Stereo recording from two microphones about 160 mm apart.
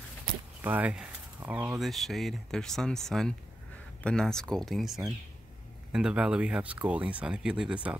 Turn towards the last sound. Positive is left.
turn(degrees=-5)  # may be behind; listen again after turning